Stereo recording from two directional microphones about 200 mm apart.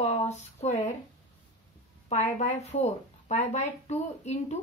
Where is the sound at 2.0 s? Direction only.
35° left (ahead or behind).